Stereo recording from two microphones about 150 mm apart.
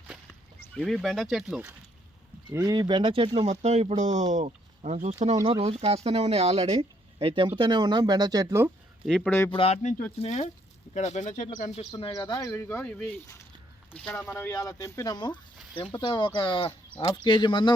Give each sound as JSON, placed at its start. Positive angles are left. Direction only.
{"t": 0.9, "sound": "speech", "side_deg": 0}
{"t": 2.5, "sound": "speech", "side_deg": -20}
{"t": 3.5, "sound": "speech", "side_deg": -50}
{"t": 5.5, "sound": "speech", "side_deg": -40}
{"t": 9.0, "sound": "speech", "side_deg": 5}
{"t": 9.5, "sound": "speech", "side_deg": 40}
{"t": 11.9, "sound": "speech", "side_deg": 35}
{"t": 12.5, "sound": "speech", "side_deg": 15}